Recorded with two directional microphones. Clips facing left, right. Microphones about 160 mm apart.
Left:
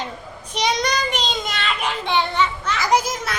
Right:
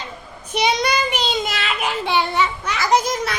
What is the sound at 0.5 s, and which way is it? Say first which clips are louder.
Child singing: right 2 dB; 5° right (ahead or behind).